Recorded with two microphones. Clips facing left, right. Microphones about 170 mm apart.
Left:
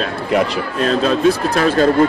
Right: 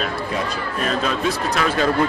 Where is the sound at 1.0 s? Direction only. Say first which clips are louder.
Left 7 dB; 30° left (ahead or behind).